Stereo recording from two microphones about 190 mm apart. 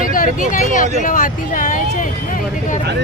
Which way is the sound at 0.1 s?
45° left (ahead or behind).